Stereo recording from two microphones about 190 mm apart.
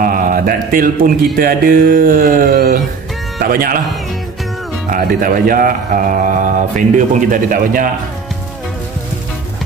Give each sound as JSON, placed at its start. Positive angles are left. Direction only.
{"t": 0.0, "sound": "speech", "side_deg": -45}
{"t": 4.9, "sound": "speech", "side_deg": -45}